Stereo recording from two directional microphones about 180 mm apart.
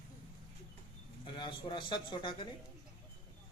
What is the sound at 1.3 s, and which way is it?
A man's voice, 25° left (ahead or behind).